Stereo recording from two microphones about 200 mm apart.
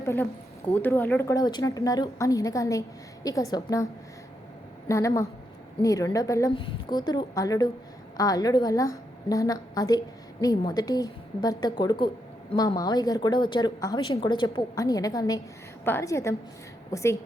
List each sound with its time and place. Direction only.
0.0 s a woman's voice: 15° left (ahead or behind)
4.9 s a woman's voice: 15° left (ahead or behind)